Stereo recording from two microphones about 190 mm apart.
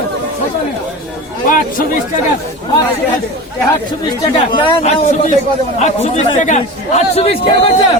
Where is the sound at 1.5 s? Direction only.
45° left (ahead or behind).